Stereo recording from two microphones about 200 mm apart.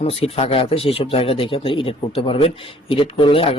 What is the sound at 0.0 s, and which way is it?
Speech, 30° left (ahead or behind).